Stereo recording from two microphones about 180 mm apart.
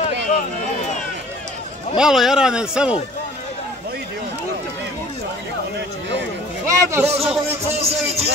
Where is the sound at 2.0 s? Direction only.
5° right (ahead or behind).